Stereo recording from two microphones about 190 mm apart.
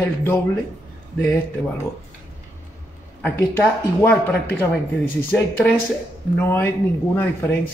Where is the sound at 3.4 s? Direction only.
10° left (ahead or behind).